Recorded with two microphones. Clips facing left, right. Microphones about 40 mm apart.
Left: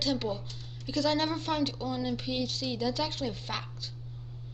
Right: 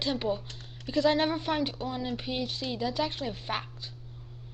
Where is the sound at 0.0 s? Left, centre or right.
Right.